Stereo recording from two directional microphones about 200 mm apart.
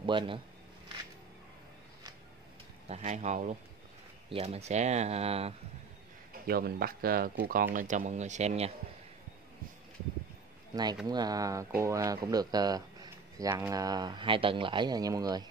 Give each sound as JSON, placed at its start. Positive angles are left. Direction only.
{"t": 0.0, "sound": "speech", "side_deg": -25}
{"t": 2.9, "sound": "speech", "side_deg": -35}
{"t": 6.4, "sound": "speech", "side_deg": -50}
{"t": 10.7, "sound": "speech", "side_deg": -20}